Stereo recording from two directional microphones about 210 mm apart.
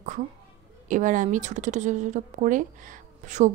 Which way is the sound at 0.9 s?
40° right (ahead or behind).